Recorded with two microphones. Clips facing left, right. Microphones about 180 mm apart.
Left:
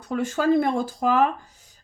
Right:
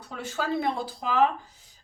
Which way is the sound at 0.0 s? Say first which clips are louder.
Left 9 dB; 50° left (ahead or behind).